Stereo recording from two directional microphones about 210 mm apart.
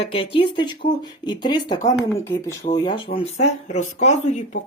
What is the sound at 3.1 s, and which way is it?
Speech, 30° left (ahead or behind).